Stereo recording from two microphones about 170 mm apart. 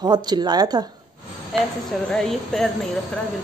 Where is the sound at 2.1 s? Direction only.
5° left (ahead or behind).